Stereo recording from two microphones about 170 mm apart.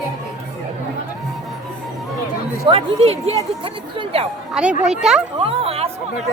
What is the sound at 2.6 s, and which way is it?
Speech, 35° right (ahead or behind).